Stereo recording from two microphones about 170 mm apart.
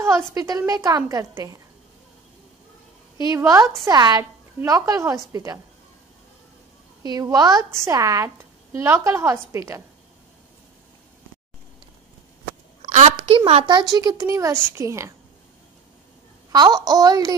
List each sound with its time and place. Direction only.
0.0 s a woman's voice: 20° right (ahead or behind)
3.2 s a woman's voice: 20° right (ahead or behind)
7.0 s a woman's voice: 20° right (ahead or behind)
12.8 s a sound: 45° right (ahead or behind)
13.2 s a woman's voice: 30° right (ahead or behind); by 15.1 s 15° right (ahead or behind)
16.5 s a woman's voice: 25° right (ahead or behind)